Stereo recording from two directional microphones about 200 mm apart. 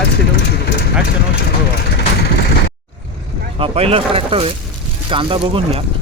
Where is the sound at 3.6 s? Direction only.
30° right (ahead or behind).